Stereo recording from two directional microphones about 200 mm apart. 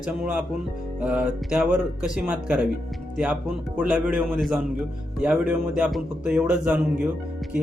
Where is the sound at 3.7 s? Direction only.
5° right (ahead or behind).